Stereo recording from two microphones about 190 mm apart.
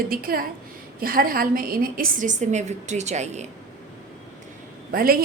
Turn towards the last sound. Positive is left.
turn(degrees=-50)  # may be behind; listen again after turning